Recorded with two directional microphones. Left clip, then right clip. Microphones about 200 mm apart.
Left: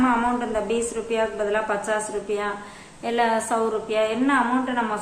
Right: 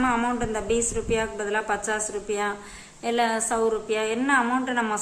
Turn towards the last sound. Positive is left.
turn(degrees=-25)  # may be behind; listen again after turning